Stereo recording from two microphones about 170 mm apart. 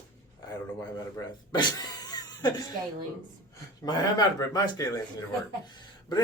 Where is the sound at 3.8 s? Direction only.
20° left (ahead or behind).